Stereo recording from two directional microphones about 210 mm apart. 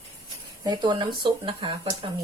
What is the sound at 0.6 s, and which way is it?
Speech, 20° right (ahead or behind).